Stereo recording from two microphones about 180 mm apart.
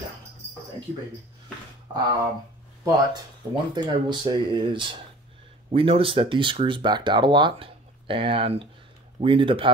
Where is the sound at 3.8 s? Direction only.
25° right (ahead or behind).